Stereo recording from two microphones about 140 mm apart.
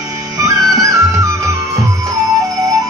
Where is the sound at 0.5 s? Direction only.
25° right (ahead or behind).